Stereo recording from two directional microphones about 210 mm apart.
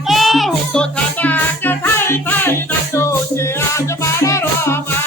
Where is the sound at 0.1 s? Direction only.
Centre (ahead or behind).